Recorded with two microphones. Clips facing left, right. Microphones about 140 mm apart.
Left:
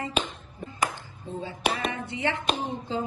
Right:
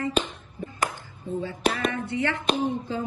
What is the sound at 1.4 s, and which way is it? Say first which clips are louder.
Speech: right 3 dB; 50° right (ahead or behind).